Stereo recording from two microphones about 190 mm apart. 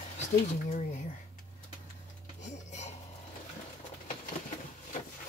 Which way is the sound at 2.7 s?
35° left (ahead or behind).